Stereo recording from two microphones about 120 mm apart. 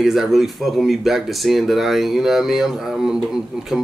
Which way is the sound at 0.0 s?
5° right (ahead or behind).